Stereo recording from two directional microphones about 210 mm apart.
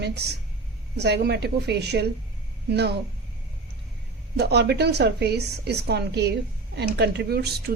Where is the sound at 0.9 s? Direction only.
50° right (ahead or behind).